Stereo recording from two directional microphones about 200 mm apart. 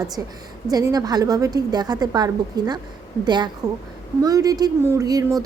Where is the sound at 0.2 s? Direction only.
15° right (ahead or behind).